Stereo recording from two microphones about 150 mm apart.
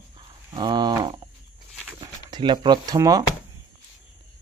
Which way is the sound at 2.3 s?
30° right (ahead or behind).